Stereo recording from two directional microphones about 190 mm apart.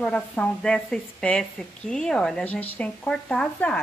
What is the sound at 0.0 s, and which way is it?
A woman's voice, 5° left (ahead or behind).